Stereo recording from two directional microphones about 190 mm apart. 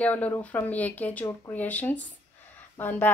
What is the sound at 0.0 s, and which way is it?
Speech, 10° left (ahead or behind).